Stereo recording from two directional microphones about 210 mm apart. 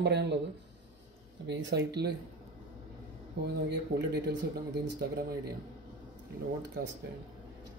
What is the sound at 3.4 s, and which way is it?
Speech, 50° right (ahead or behind).